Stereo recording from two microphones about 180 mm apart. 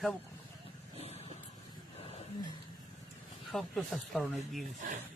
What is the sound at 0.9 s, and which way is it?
Vehicle, 35° right (ahead or behind).